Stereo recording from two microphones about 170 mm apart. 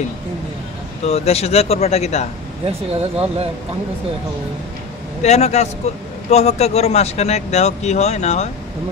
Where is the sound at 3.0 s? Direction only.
35° right (ahead or behind).